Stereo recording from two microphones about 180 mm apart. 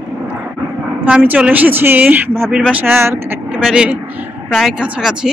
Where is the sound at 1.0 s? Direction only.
10° right (ahead or behind).